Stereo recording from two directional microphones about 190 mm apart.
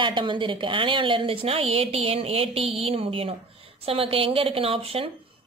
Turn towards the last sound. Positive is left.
turn(degrees=-30)  # may be behind; listen again after turning